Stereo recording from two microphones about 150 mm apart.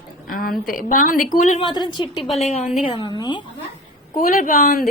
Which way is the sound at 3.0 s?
30° left (ahead or behind).